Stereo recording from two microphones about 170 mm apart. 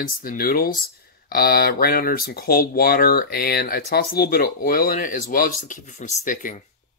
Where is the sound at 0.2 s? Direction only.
60° left (ahead or behind).